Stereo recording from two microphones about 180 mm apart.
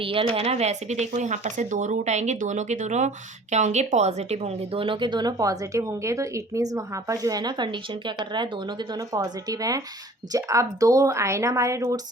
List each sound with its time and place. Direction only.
0.0 s speech: 30° right (ahead or behind)